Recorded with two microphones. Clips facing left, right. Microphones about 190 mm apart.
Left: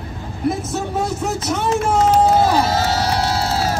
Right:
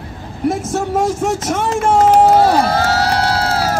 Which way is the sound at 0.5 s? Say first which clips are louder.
Right 5 dB; 90° right.